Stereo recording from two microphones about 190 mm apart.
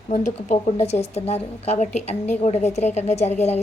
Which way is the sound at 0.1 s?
40° left (ahead or behind).